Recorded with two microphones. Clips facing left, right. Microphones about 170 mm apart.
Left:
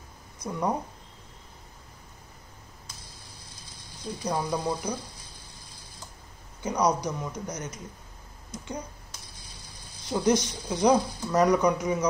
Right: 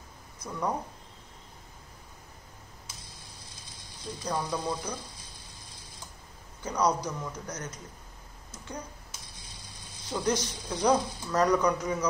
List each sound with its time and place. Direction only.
0.4 s speech: 15° left (ahead or behind)
4.2 s speech: 15° left (ahead or behind)
6.6 s speech: 10° left (ahead or behind)
8.5 s a sound: 10° left (ahead or behind)
10.0 s speech: 15° left (ahead or behind)